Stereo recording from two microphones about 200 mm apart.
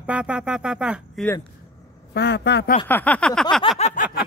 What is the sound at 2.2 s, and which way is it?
Speech, 55° left (ahead or behind).